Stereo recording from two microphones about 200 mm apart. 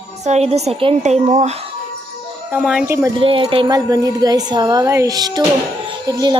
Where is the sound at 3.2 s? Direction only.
25° right (ahead or behind).